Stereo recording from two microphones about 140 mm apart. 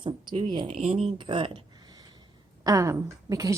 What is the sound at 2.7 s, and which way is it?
Speech, 25° right (ahead or behind).